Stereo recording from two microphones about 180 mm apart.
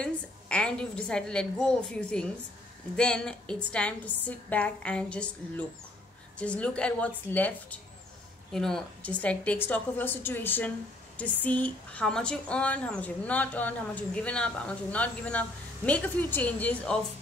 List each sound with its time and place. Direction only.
0.0 s a woman's voice: 5° left (ahead or behind)